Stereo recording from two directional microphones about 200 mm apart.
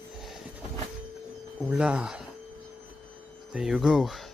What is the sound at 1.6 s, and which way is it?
Speech, 5° right (ahead or behind).